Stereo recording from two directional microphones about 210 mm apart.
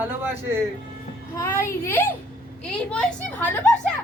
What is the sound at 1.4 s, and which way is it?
A child's voice, 10° left (ahead or behind).